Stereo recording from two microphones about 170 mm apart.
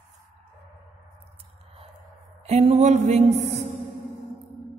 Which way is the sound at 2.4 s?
40° right (ahead or behind).